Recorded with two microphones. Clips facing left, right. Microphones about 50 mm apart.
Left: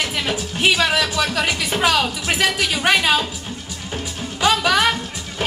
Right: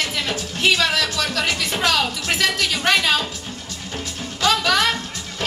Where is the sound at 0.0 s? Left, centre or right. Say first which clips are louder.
Left 2 dB; centre.